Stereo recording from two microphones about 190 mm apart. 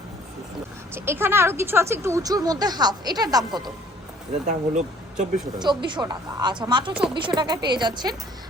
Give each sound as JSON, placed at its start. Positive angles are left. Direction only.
{"t": 0.9, "sound": "a woman's voice", "side_deg": -10}
{"t": 4.4, "sound": "speech", "side_deg": -40}
{"t": 5.5, "sound": "a woman's voice", "side_deg": -25}